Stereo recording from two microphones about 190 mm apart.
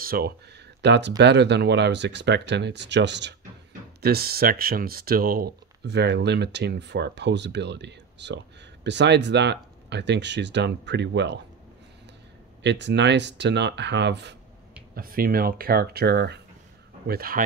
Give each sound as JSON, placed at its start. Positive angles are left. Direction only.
{"t": 0.0, "sound": "speech", "side_deg": -55}
{"t": 4.0, "sound": "speech", "side_deg": -55}
{"t": 12.6, "sound": "speech", "side_deg": -65}
{"t": 15.0, "sound": "speech", "side_deg": -50}